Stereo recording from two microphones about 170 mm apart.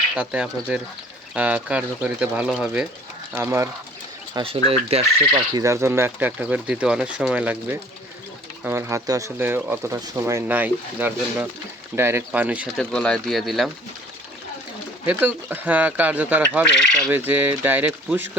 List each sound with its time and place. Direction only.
0.2 s speech: 5° right (ahead or behind)
3.3 s speech: 15° right (ahead or behind)
4.4 s speech: 35° right (ahead or behind)
5.5 s speech: 15° right (ahead or behind)
12.8 s speech: 5° left (ahead or behind)
15.0 s speech: 10° right (ahead or behind)